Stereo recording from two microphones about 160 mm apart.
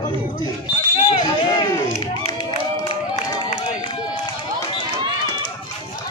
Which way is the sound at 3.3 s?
30° left (ahead or behind).